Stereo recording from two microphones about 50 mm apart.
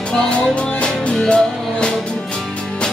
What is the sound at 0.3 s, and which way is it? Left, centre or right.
Music, left.